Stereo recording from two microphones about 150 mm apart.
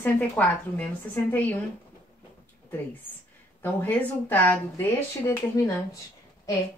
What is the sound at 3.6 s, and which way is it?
A woman's voice, 10° left (ahead or behind).